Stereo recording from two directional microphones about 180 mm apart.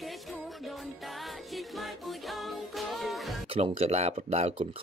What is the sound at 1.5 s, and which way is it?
Music, centre (ahead or behind).